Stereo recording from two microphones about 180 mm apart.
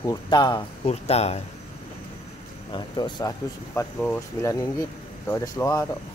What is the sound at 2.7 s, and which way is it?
Speech, 25° left (ahead or behind).